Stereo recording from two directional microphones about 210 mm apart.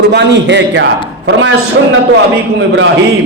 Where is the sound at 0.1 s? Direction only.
55° right (ahead or behind).